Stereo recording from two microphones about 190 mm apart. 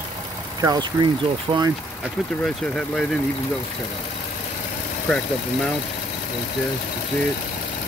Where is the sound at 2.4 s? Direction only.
Centre (ahead or behind).